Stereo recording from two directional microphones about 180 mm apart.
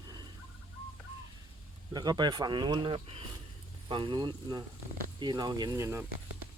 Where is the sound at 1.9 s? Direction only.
20° right (ahead or behind).